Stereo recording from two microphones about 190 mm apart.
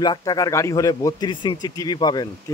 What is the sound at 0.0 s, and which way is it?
Speech, 20° left (ahead or behind).